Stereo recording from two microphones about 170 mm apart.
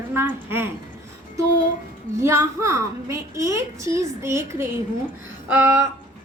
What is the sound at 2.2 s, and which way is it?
A woman's voice, 15° right (ahead or behind).